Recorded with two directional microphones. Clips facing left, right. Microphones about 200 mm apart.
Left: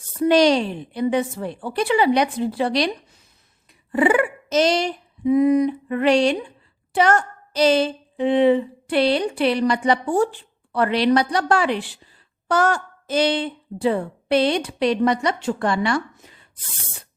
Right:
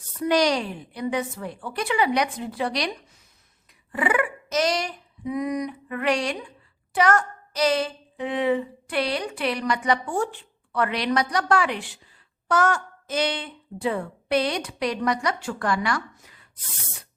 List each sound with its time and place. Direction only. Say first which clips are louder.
0.2 s speech: left 6 dB; 25° left (ahead or behind)
3.9 s speech: left 6 dB; 30° left (ahead or behind)